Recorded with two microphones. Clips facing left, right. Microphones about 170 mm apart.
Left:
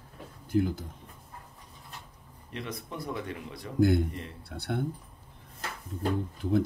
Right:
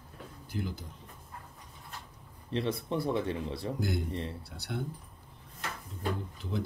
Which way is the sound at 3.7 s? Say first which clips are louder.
Left 13 dB; 55° left (ahead or behind).